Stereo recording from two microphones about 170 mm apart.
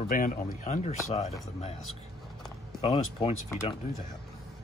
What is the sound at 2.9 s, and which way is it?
Speech, 25° left (ahead or behind).